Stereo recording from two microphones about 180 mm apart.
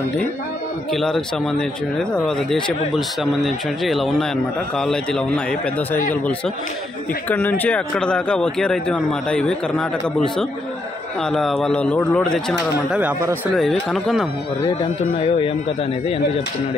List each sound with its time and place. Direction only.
0.9 s a man's voice: centre (ahead or behind)
7.2 s a man's voice: 10° left (ahead or behind)
12.5 s speech: 10° right (ahead or behind)
13.6 s a man's voice: centre (ahead or behind)
14.6 s speech: 30° left (ahead or behind)